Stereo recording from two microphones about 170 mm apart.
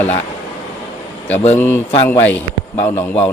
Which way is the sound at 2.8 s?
10° left (ahead or behind).